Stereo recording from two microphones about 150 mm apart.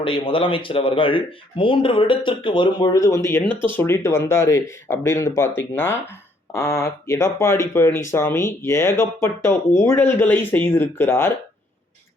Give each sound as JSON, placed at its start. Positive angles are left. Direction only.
{"t": 0.0, "sound": "speech", "side_deg": 35}
{"t": 3.5, "sound": "speech", "side_deg": -35}
{"t": 3.8, "sound": "speech", "side_deg": 15}